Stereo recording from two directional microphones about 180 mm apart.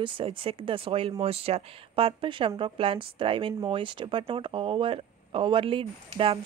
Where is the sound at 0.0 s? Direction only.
30° right (ahead or behind).